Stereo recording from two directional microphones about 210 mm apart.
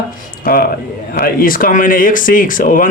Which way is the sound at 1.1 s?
45° left (ahead or behind).